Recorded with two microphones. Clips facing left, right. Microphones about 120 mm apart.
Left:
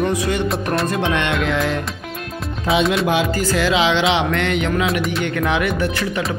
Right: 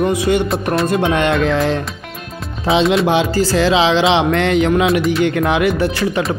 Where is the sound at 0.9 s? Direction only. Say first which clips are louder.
Right 5 dB; 35° right (ahead or behind).